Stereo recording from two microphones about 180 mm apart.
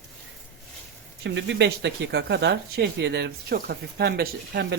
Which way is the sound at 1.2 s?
80° right.